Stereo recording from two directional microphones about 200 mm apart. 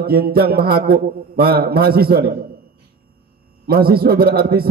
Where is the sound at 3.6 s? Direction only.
50° right (ahead or behind).